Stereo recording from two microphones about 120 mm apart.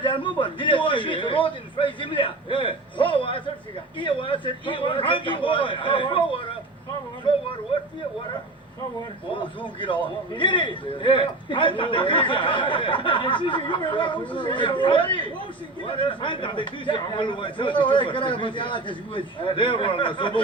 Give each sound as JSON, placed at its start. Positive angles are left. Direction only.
{"t": 0.0, "sound": "a man's voice", "side_deg": 45}
{"t": 7.3, "sound": "a sound", "side_deg": 45}
{"t": 9.3, "sound": "a man's voice", "side_deg": 45}